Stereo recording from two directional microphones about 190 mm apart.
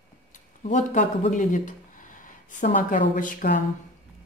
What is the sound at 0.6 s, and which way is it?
A woman's voice, 40° left (ahead or behind).